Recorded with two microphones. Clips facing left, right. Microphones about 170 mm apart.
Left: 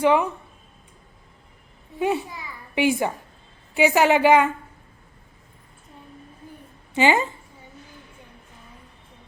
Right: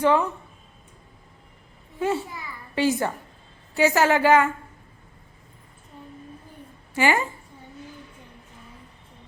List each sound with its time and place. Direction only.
0.0 s a woman's voice: 15° left (ahead or behind)
2.0 s a woman's voice: 15° left (ahead or behind)
6.9 s a woman's voice: 20° left (ahead or behind)